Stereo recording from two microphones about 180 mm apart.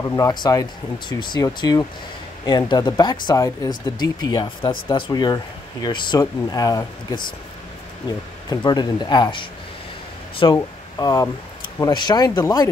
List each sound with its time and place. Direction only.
0.1 s speech: 20° left (ahead or behind)
8.5 s speech: 20° left (ahead or behind)